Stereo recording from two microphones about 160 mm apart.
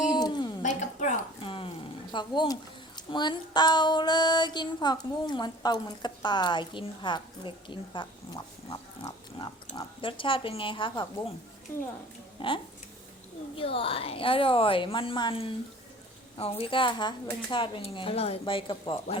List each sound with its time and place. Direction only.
0.2 s music: 25° left (ahead or behind)
0.6 s a sound: 50° left (ahead or behind)
1.4 s a sound: 35° left (ahead or behind)
2.1 s a woman's voice: 30° left (ahead or behind)
11.7 s a woman's voice: 15° left (ahead or behind)
12.4 s speech: 30° left (ahead or behind)
13.6 s speech: 35° left (ahead or behind)